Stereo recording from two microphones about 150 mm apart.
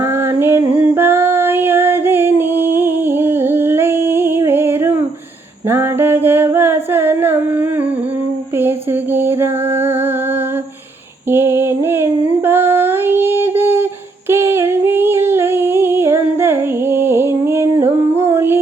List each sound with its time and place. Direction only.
0.3 s female singing: 15° right (ahead or behind)
5.6 s a sound: 15° right (ahead or behind)
9.1 s music: 15° right (ahead or behind)
11.3 s female singing: 15° right (ahead or behind)
14.3 s humming: 15° right (ahead or behind)
18.2 s music: 15° right (ahead or behind)